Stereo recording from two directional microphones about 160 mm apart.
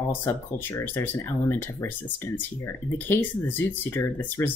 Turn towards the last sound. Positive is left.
turn(degrees=15)  # may be behind; listen again after turning